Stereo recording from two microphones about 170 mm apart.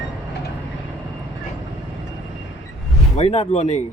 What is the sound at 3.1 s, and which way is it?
Speech, 40° left (ahead or behind).